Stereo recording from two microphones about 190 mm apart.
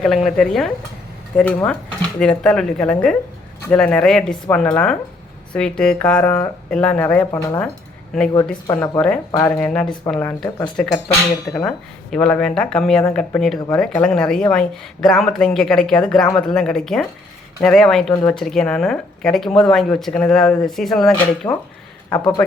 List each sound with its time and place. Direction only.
0.0 s a woman's voice: centre (ahead or behind)
9.6 s a woman's voice: 5° left (ahead or behind)
21.4 s speech: 20° left (ahead or behind)
22.1 s a woman's voice: 5° left (ahead or behind)